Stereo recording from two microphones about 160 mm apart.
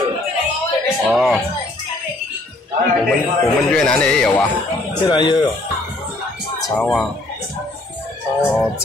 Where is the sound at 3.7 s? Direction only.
5° left (ahead or behind).